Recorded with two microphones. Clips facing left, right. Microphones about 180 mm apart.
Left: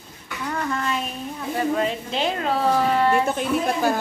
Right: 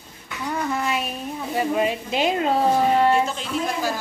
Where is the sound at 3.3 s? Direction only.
55° left (ahead or behind).